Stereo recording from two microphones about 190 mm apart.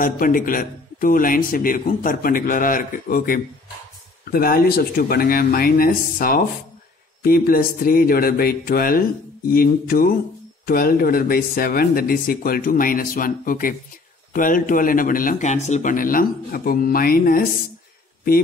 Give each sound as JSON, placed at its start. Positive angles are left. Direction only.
{"t": 0.0, "sound": "a man's voice", "side_deg": 45}